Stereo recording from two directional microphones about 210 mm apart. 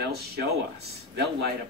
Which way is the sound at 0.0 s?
50° right (ahead or behind).